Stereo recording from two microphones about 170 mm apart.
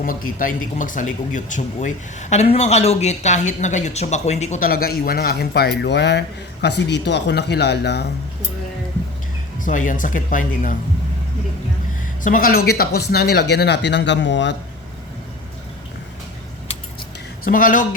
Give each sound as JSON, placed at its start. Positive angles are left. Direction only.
{"t": 0.0, "sound": "speech", "side_deg": 55}
{"t": 4.7, "sound": "a man's voice", "side_deg": 60}
{"t": 9.6, "sound": "speech", "side_deg": 50}
{"t": 12.2, "sound": "speech", "side_deg": 55}
{"t": 17.4, "sound": "speech", "side_deg": 55}